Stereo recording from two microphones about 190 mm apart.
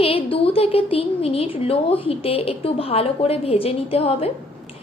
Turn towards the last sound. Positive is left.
turn(degrees=30)  # may be behind; listen again after turning